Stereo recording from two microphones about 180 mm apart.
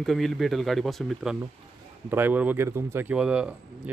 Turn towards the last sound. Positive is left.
turn(degrees=-5)  # may be behind; listen again after turning